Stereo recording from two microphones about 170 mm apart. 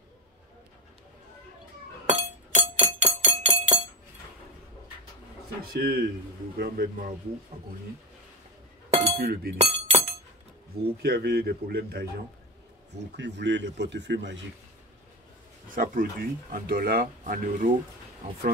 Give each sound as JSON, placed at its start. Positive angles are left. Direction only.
{"t": 2.0, "sound": "music", "side_deg": -45}
{"t": 5.7, "sound": "speech", "side_deg": -65}
{"t": 8.9, "sound": "chink", "side_deg": -40}
{"t": 9.2, "sound": "a man's voice", "side_deg": -70}
{"t": 9.6, "sound": "glass", "side_deg": -40}
{"t": 11.0, "sound": "a man's voice", "side_deg": -70}
{"t": 13.1, "sound": "speech", "side_deg": -90}
{"t": 15.7, "sound": "speech", "side_deg": -55}